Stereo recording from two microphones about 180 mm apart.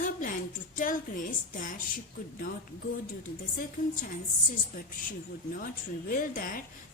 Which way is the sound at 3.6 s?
50° left (ahead or behind).